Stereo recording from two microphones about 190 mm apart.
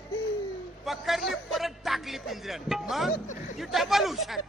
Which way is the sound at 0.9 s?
Centre (ahead or behind).